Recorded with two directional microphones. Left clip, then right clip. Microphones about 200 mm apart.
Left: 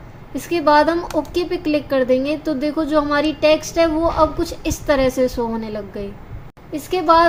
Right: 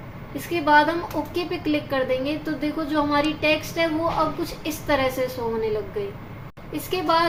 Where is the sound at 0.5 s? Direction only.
55° left (ahead or behind).